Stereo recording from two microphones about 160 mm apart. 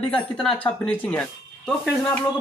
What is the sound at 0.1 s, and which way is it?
Speech, 5° left (ahead or behind).